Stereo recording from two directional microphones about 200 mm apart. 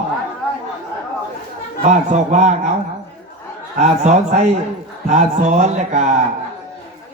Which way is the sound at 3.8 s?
35° right (ahead or behind).